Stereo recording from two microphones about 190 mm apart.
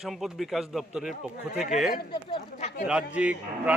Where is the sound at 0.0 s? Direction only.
Centre (ahead or behind).